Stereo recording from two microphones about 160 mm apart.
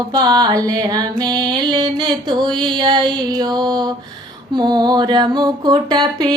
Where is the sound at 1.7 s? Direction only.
30° right (ahead or behind).